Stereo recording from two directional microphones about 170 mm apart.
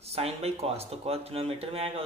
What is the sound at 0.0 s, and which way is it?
Speech, 35° right (ahead or behind).